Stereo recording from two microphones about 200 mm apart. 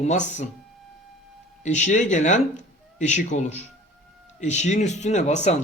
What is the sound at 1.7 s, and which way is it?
Speech, 35° left (ahead or behind).